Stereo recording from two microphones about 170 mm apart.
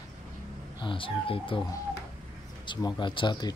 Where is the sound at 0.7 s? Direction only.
30° left (ahead or behind).